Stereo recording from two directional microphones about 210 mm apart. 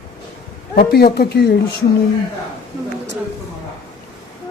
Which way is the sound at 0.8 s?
50° left (ahead or behind).